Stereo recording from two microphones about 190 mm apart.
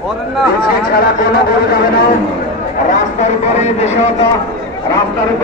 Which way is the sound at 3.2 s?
35° left (ahead or behind).